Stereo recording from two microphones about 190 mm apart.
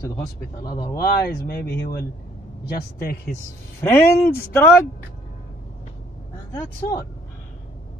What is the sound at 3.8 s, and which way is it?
Speech, 15° left (ahead or behind).